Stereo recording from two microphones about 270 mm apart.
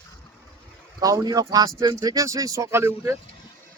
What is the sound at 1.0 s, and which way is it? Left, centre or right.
Speech, centre.